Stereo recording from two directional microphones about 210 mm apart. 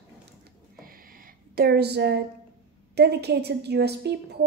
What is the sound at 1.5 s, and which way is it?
A woman's voice, 50° right (ahead or behind).